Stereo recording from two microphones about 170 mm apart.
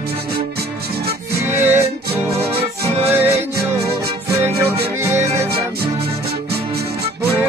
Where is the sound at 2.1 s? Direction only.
35° right (ahead or behind).